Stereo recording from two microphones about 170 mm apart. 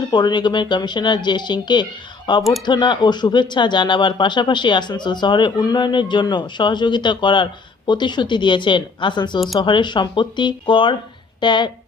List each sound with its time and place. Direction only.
0.1 s speech: 25° left (ahead or behind)